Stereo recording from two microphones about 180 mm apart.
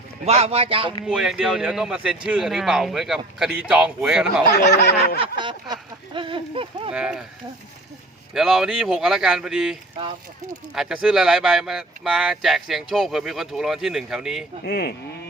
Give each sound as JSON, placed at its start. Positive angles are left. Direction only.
{"t": 0.3, "sound": "speech", "side_deg": -35}
{"t": 1.0, "sound": "speech", "side_deg": -5}
{"t": 4.5, "sound": "snicker", "side_deg": 70}
{"t": 5.4, "sound": "speech", "side_deg": -25}
{"t": 6.9, "sound": "speech", "side_deg": -5}
{"t": 8.3, "sound": "speech", "side_deg": 0}
{"t": 10.8, "sound": "speech", "side_deg": 0}
{"t": 14.6, "sound": "speech", "side_deg": 60}